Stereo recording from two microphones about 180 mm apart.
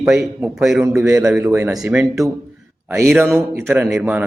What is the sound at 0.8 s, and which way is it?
Speech, 15° right (ahead or behind).